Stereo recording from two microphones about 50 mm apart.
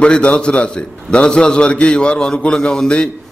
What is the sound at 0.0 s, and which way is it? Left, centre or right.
A man's voice, left.